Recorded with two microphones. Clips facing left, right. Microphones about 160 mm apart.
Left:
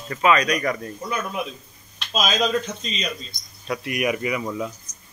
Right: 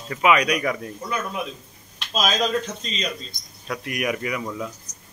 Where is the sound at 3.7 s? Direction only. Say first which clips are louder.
Left 2 dB; 5° left (ahead or behind).